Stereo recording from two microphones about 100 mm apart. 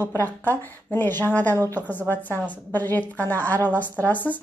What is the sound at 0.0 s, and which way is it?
A woman's voice, 20° left (ahead or behind).